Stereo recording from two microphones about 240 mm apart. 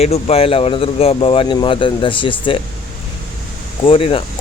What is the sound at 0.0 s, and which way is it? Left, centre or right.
Speech, left.